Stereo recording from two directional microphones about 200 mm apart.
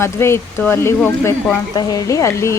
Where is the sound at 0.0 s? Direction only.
15° left (ahead or behind).